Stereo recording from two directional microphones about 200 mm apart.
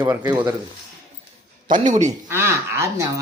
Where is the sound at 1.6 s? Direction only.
40° right (ahead or behind).